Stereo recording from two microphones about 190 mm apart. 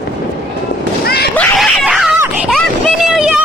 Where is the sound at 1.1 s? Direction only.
55° left (ahead or behind).